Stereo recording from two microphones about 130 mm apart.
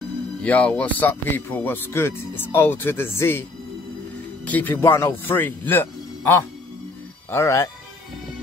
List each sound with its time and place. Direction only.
0.4 s speech: 10° left (ahead or behind)
4.5 s speech: 15° left (ahead or behind)